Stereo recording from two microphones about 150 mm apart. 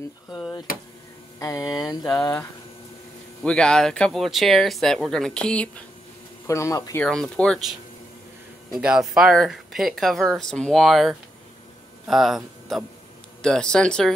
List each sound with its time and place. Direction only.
1.4 s speech: 20° left (ahead or behind)
3.4 s speech: 5° left (ahead or behind)
6.4 s speech: 20° left (ahead or behind)
7.0 s speech: 5° left (ahead or behind)
8.7 s speech: 5° right (ahead or behind)